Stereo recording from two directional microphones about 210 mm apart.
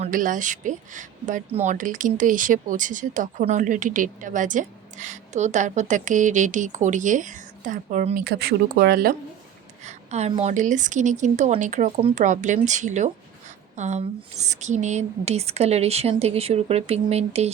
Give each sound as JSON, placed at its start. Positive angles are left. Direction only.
{"t": 0.0, "sound": "speech", "side_deg": -40}
{"t": 9.8, "sound": "a woman's voice", "side_deg": -30}